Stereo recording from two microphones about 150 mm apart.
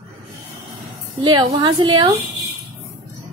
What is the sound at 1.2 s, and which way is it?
Speech, 30° right (ahead or behind).